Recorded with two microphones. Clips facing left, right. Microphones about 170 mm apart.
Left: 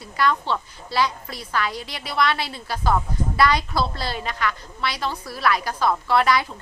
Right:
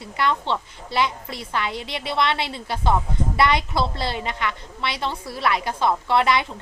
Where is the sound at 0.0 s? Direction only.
25° right (ahead or behind).